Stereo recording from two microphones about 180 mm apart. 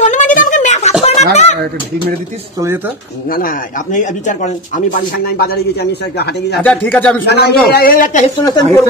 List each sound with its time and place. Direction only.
0.0 s a sound: 40° left (ahead or behind)
1.0 s speech: 40° left (ahead or behind)
3.3 s speech: 50° left (ahead or behind)
5.5 s a man's voice: 65° left (ahead or behind)
6.6 s speech: 5° left (ahead or behind)
7.2 s a man's voice: 65° left (ahead or behind); by 8.3 s 45° left (ahead or behind)
8.4 s speech: 20° left (ahead or behind)